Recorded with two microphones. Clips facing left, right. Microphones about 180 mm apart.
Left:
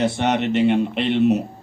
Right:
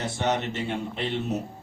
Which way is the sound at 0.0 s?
75° left (ahead or behind).